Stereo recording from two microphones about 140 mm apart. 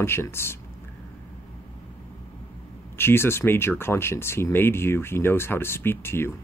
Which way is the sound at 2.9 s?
15° left (ahead or behind).